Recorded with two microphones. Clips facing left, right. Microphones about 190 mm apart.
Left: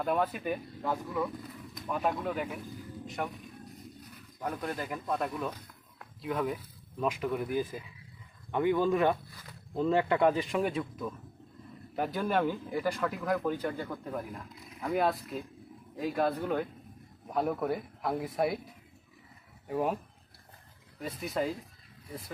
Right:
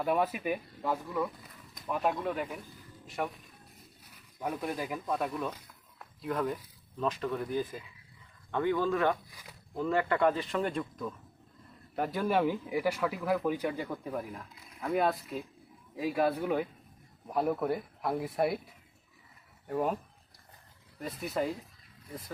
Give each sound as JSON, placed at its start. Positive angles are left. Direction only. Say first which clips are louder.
{"t": 0.0, "sound": "speech", "louder": "right 1 dB", "side_deg": -5}
{"t": 6.0, "sound": "a sound", "louder": "even", "side_deg": 0}
{"t": 7.0, "sound": "speech", "louder": "left 1 dB", "side_deg": 10}
{"t": 19.6, "sound": "speech", "louder": "even", "side_deg": 5}
{"t": 21.0, "sound": "speech", "louder": "even", "side_deg": 0}